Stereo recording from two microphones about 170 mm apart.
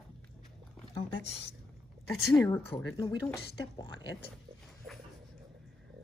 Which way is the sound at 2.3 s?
15° left (ahead or behind).